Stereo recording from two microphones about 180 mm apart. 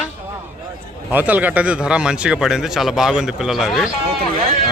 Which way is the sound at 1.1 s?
10° right (ahead or behind).